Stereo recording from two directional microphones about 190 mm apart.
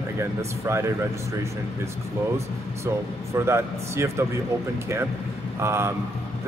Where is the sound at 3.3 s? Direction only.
15° right (ahead or behind).